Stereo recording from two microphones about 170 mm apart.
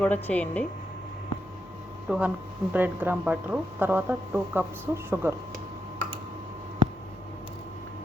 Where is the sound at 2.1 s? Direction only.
10° right (ahead or behind).